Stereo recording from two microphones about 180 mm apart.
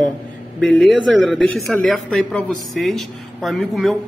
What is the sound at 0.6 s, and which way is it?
Speech, centre (ahead or behind).